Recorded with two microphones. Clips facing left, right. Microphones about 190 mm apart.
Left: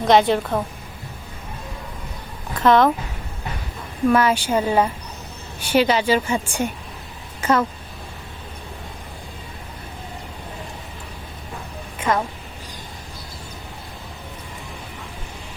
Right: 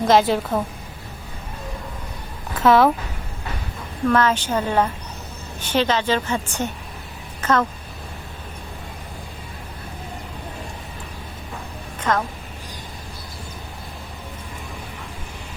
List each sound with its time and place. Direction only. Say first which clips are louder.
0.0 s a woman's voice: left 1 dB; centre (ahead or behind)
2.6 s speech: even; 5° right (ahead or behind)
4.1 s a woman's voice: left 1 dB; 10° left (ahead or behind)
11.9 s a sound: left 1 dB; 10° left (ahead or behind)